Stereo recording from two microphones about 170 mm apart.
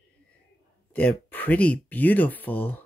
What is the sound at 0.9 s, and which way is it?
Speech, 10° left (ahead or behind).